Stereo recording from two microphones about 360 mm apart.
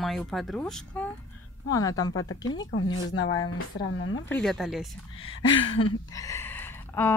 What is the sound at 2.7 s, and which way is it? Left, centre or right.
Speech, left.